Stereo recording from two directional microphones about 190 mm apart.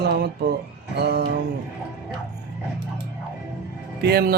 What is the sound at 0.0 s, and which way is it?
Speech, 60° right (ahead or behind).